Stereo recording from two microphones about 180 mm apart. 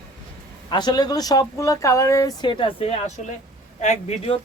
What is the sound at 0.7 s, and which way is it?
Speech, 25° left (ahead or behind).